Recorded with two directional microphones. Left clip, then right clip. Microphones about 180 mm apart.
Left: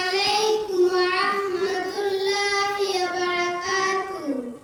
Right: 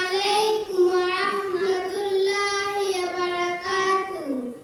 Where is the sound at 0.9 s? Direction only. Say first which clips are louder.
Left 1 dB; 15° right (ahead or behind).